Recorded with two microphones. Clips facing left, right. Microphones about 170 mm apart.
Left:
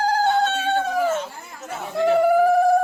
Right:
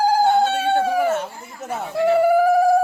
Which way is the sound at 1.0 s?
60° right (ahead or behind).